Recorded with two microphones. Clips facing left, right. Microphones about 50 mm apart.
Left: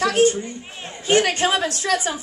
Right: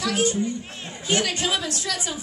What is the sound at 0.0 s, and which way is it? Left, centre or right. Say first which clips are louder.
A woman's voice: left 5 dB; left.